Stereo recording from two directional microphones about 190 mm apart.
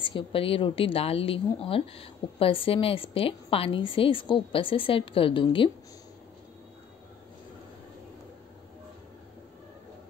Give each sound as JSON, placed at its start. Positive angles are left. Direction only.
{"t": 0.0, "sound": "a woman's voice", "side_deg": 25}